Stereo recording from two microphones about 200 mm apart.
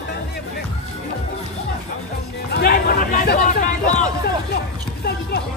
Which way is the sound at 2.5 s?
50° left (ahead or behind).